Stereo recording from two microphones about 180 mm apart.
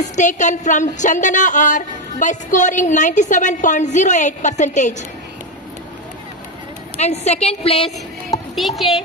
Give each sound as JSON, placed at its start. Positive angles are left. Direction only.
{"t": 0.0, "sound": "a woman's voice", "side_deg": 40}
{"t": 7.0, "sound": "a woman's voice", "side_deg": 35}
{"t": 8.5, "sound": "speech", "side_deg": 0}